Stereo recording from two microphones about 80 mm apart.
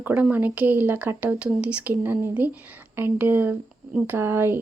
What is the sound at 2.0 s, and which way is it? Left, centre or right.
Speech, right.